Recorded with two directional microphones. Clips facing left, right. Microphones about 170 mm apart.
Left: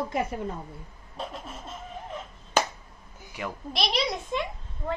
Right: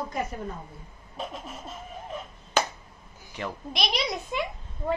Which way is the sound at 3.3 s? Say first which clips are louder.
Even; 5° left (ahead or behind).